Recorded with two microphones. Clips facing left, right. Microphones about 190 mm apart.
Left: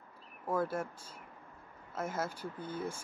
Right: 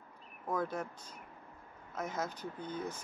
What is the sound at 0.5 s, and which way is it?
Speech, 5° left (ahead or behind).